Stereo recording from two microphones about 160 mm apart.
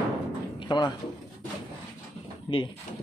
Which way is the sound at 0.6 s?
30° left (ahead or behind).